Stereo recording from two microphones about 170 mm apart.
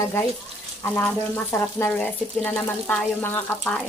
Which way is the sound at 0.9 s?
15° left (ahead or behind).